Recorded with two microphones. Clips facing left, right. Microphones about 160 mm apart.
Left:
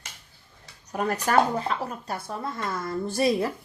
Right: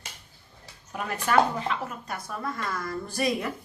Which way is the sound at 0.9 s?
40° left (ahead or behind).